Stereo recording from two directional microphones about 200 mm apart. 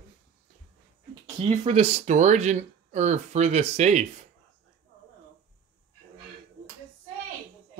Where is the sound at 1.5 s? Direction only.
30° right (ahead or behind).